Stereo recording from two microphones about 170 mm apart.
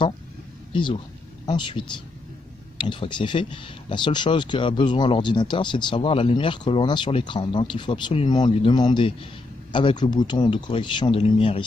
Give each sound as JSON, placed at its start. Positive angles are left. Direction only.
{"t": 1.4, "sound": "speech", "side_deg": 25}